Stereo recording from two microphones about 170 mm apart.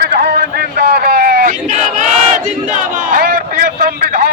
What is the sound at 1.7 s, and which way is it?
Battle cry, 45° right (ahead or behind).